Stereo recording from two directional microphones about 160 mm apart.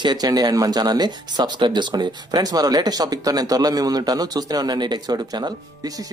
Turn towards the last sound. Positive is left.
turn(degrees=-25)  # may be behind; listen again after turning